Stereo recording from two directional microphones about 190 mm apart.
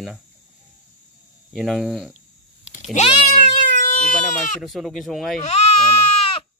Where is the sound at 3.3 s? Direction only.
40° left (ahead or behind).